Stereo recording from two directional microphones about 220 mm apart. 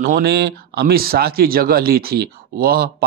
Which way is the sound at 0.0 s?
45° right (ahead or behind).